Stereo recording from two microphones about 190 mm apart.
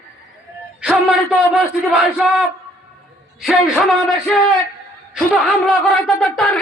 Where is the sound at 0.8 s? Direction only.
Centre (ahead or behind).